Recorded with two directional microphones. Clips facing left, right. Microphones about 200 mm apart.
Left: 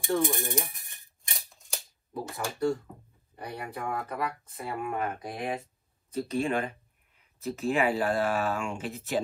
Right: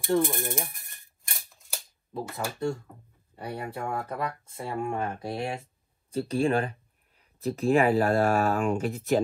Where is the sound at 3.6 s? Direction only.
25° right (ahead or behind).